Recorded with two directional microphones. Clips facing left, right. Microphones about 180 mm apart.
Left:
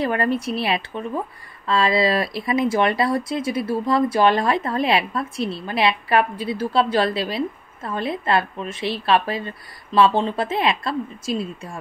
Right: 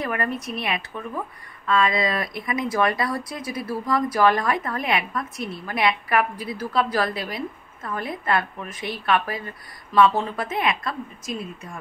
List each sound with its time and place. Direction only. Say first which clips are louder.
0.0 s speech: left 5 dB; 30° left (ahead or behind)